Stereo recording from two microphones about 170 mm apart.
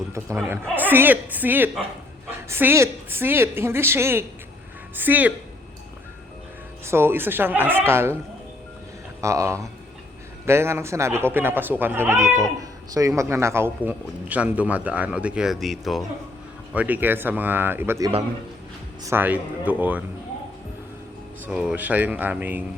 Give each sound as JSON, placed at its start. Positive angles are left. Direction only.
{"t": 0.8, "sound": "a man's voice", "side_deg": -10}
{"t": 6.8, "sound": "a man's voice", "side_deg": -15}
{"t": 9.2, "sound": "a man's voice", "side_deg": -20}
{"t": 21.4, "sound": "a man's voice", "side_deg": -5}